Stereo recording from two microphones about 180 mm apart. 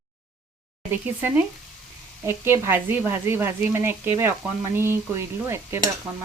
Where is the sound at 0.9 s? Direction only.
10° right (ahead or behind).